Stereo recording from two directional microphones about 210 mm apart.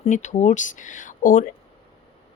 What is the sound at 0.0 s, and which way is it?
Speech, 35° left (ahead or behind).